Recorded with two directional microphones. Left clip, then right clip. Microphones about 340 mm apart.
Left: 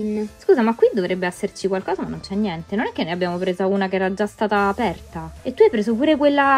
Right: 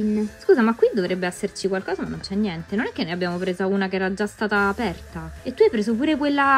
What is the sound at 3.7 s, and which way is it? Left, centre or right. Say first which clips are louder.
Speech: left 3 dB; centre.